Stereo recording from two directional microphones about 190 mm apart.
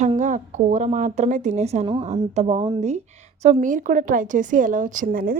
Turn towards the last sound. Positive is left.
turn(degrees=-50)  # may be behind; listen again after turning